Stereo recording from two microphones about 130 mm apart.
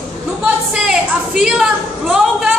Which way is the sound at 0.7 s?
5° right (ahead or behind).